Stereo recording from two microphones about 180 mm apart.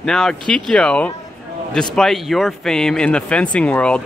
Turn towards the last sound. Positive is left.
turn(degrees=5)  # may be behind; listen again after turning